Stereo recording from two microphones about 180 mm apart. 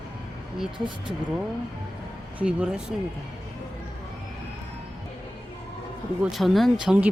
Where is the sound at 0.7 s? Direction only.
25° right (ahead or behind).